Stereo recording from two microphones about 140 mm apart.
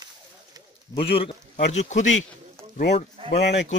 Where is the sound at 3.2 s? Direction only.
40° right (ahead or behind).